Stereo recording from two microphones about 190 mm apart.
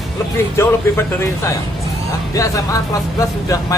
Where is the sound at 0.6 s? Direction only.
15° left (ahead or behind).